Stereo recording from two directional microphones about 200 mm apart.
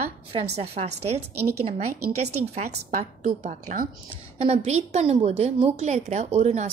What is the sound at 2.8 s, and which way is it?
A woman's voice, 35° right (ahead or behind).